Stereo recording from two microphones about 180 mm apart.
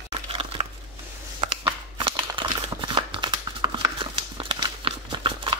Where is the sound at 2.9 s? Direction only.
25° right (ahead or behind).